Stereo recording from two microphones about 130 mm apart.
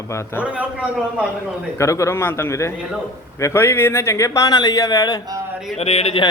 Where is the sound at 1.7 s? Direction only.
25° left (ahead or behind).